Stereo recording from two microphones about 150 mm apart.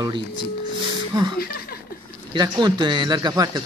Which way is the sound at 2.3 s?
30° right (ahead or behind).